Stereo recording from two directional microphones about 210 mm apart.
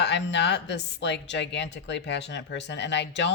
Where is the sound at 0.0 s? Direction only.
55° left (ahead or behind).